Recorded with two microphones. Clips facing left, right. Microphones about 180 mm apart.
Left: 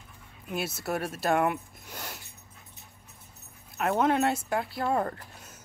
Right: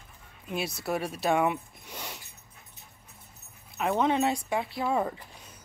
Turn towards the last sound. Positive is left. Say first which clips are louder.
# even
turn(degrees=0)  # may be behind; listen again after turning